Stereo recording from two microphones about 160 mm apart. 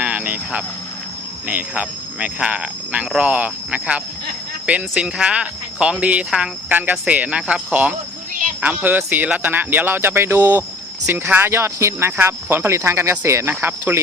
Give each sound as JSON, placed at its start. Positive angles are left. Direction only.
{"t": 0.0, "sound": "vehicle", "side_deg": -10}
{"t": 1.5, "sound": "speech", "side_deg": -10}